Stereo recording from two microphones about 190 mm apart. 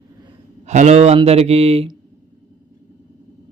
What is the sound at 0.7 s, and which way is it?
Speech, 35° right (ahead or behind).